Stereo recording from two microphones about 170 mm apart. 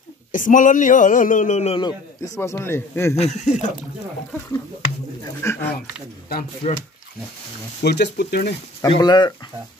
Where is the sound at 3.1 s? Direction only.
40° left (ahead or behind).